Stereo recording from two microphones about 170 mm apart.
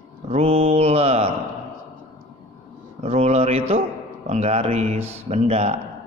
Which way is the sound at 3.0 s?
35° right (ahead or behind).